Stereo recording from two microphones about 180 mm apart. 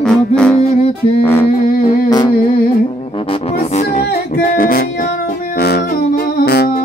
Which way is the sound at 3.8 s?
55° left (ahead or behind).